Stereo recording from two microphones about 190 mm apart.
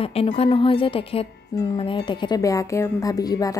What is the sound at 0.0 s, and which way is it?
A woman's voice, 30° left (ahead or behind).